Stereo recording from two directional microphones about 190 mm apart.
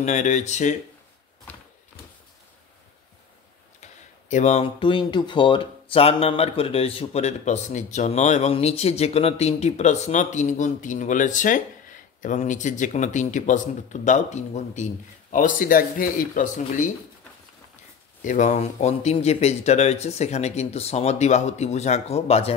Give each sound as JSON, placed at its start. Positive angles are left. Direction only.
{"t": 0.0, "sound": "speech", "side_deg": 40}
{"t": 3.8, "sound": "speech", "side_deg": 35}
{"t": 18.2, "sound": "speech", "side_deg": 40}